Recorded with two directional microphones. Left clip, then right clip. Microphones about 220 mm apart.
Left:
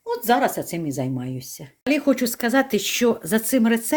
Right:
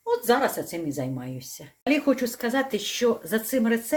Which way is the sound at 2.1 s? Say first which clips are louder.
Left 5 dB; 45° left (ahead or behind).